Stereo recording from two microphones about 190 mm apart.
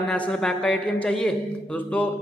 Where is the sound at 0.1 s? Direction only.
5° left (ahead or behind).